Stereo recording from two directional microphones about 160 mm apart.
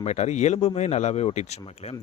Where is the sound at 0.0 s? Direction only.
45° left (ahead or behind).